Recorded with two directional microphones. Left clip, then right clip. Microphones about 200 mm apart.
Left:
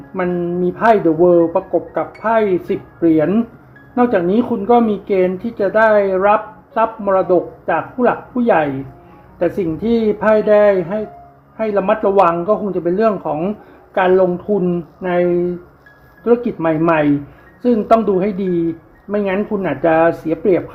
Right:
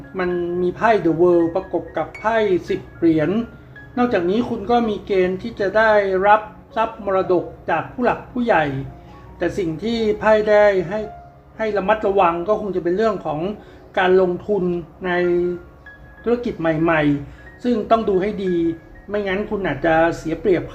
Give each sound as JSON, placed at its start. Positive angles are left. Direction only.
{"t": 0.2, "sound": "speech", "side_deg": 50}